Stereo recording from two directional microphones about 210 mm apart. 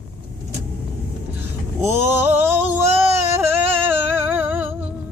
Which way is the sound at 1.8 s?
10° right (ahead or behind).